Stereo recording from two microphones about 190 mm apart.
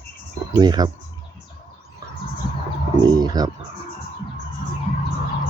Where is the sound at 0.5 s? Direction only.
20° right (ahead or behind).